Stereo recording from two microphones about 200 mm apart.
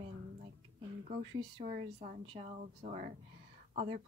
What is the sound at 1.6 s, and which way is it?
Speech, 40° right (ahead or behind).